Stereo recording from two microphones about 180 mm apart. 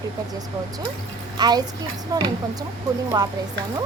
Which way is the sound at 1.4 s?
20° right (ahead or behind).